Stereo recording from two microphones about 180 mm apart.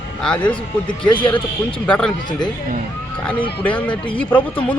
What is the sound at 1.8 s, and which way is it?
Speech, 5° left (ahead or behind).